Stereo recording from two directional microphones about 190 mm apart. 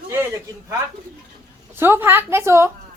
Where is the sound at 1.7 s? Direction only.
10° right (ahead or behind).